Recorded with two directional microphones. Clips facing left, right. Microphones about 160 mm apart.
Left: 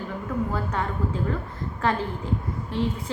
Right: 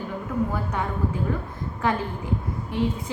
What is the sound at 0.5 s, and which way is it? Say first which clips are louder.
A woman's voice: even; 15° right (ahead or behind).